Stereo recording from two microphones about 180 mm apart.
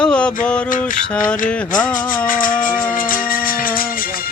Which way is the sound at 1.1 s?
5° left (ahead or behind).